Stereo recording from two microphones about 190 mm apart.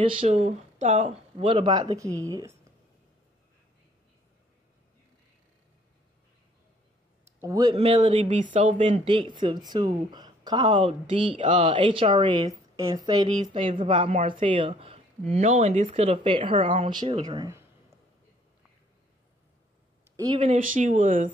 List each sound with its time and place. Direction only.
0.0 s speech: 30° right (ahead or behind)
1.4 s speech: 25° right (ahead or behind)
7.3 s a man's voice: 15° right (ahead or behind)
7.7 s speech: 30° right (ahead or behind)
8.5 s speech: 40° right (ahead or behind)
8.7 s speech: 30° right (ahead or behind)
20.2 s speech: 25° right (ahead or behind)
20.5 s speech: 45° right (ahead or behind)